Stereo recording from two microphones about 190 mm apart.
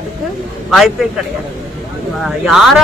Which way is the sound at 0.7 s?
Centre (ahead or behind).